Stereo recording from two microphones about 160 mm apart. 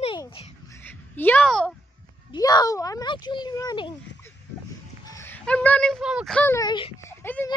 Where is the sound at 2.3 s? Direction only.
25° left (ahead or behind).